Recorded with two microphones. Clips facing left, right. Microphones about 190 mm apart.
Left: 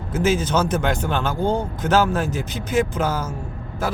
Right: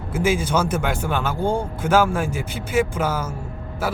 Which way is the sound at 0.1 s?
10° right (ahead or behind).